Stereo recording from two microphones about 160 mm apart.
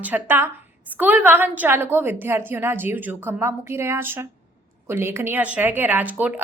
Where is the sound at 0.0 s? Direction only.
10° right (ahead or behind).